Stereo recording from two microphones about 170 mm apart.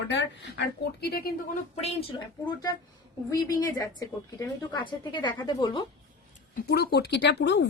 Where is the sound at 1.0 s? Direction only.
65° left (ahead or behind).